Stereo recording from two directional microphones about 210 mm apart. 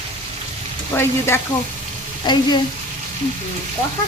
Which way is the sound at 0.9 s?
10° left (ahead or behind).